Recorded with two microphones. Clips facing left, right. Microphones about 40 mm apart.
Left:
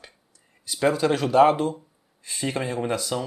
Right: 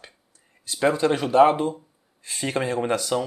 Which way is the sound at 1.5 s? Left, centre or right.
Centre.